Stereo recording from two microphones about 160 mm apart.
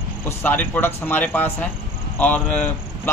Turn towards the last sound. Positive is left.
turn(degrees=10)  # may be behind; listen again after turning